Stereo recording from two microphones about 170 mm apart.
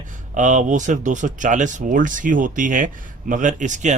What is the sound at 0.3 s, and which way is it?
Speech, 45° right (ahead or behind).